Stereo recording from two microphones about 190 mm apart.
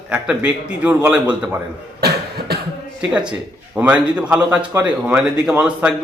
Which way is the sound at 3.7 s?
5° right (ahead or behind).